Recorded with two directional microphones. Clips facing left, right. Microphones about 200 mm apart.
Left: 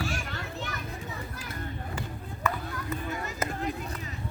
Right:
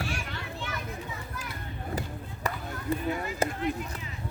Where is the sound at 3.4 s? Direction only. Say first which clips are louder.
Right 4 dB; 30° right (ahead or behind).